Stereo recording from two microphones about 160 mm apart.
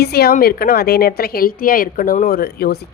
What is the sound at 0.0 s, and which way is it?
A woman's voice, 80° left.